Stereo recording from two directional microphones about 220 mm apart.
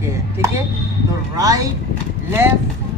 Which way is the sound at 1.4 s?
15° right (ahead or behind).